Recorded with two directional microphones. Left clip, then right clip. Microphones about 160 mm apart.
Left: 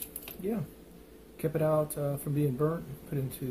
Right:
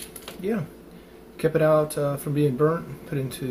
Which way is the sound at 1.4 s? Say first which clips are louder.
Right 9 dB; centre (ahead or behind).